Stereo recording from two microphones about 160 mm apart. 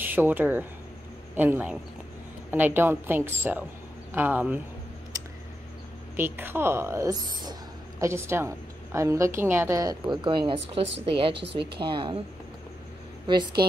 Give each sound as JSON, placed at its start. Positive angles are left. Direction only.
{"t": 0.0, "sound": "a woman's voice", "side_deg": -10}
{"t": 6.1, "sound": "a woman's voice", "side_deg": -15}
{"t": 13.3, "sound": "a woman's voice", "side_deg": -25}